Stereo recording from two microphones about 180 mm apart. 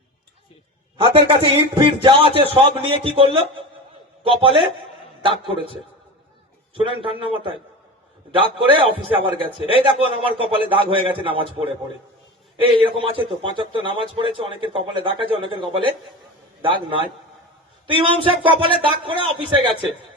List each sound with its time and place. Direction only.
0.9 s a man's voice: 30° right (ahead or behind)